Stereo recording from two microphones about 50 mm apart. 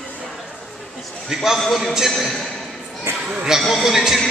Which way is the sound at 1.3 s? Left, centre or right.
Centre.